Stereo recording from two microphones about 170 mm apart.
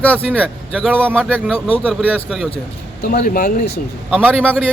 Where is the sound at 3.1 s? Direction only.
60° left (ahead or behind).